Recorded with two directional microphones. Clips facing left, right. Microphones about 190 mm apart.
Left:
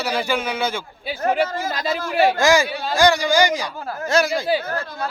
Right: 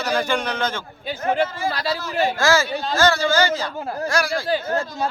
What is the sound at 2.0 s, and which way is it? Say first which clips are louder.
Speech: left 7 dB; 60° left (ahead or behind).